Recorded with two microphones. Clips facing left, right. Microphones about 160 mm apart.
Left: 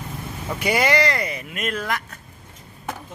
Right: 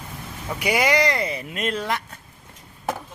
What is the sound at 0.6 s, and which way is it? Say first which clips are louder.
Speech: even; 10° right (ahead or behind).